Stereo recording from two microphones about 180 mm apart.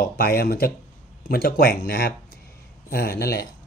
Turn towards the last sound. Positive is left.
turn(degrees=60)  # may be behind; listen again after turning